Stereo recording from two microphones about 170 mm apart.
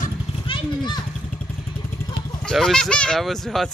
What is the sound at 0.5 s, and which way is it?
Speech, 25° left (ahead or behind).